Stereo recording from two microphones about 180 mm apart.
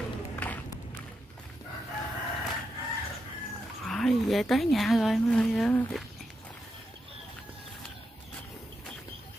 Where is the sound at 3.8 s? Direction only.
Centre (ahead or behind).